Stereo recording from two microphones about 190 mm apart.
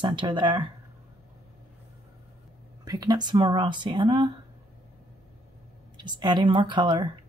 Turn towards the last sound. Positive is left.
turn(degrees=-25)  # may be behind; listen again after turning